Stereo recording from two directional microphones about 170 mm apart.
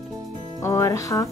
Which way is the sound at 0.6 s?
15° left (ahead or behind).